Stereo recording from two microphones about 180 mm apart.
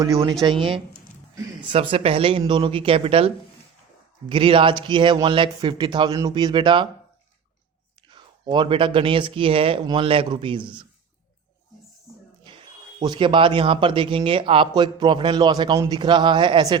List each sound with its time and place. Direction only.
0.4 s speech: 30° right (ahead or behind)
8.1 s speech: 25° right (ahead or behind)
13.0 s speech: 25° right (ahead or behind)